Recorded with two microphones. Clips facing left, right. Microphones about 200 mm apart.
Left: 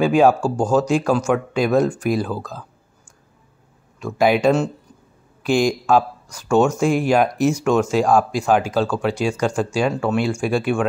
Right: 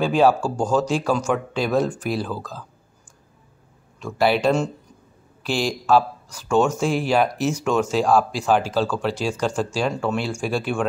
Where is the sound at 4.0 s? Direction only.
10° left (ahead or behind).